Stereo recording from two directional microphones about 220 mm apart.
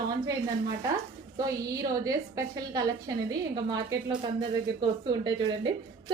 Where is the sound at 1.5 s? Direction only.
15° right (ahead or behind).